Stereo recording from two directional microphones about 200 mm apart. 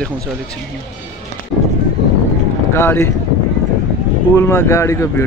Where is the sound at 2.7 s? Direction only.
10° left (ahead or behind).